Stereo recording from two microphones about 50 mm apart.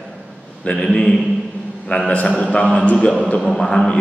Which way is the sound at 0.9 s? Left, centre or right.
Centre.